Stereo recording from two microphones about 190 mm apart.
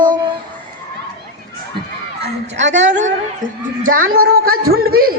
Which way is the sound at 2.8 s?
40° right (ahead or behind).